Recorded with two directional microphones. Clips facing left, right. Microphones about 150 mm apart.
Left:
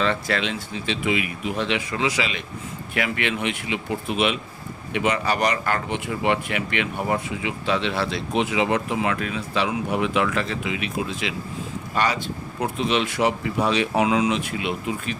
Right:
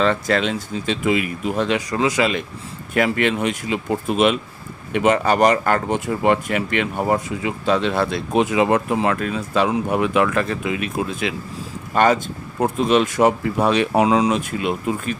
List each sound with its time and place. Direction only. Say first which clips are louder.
0.0 s speech: right 5 dB; 45° right (ahead or behind)
14.0 s speech: right 3 dB; 40° right (ahead or behind)